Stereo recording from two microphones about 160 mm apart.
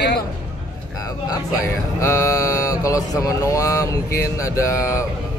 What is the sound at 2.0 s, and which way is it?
Speech, 20° left (ahead or behind).